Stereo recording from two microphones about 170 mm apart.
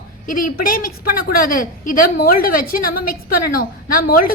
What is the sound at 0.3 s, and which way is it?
A woman's voice, 55° left (ahead or behind).